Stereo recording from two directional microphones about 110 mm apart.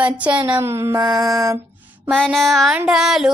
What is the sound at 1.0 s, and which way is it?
Mantra, 35° right (ahead or behind).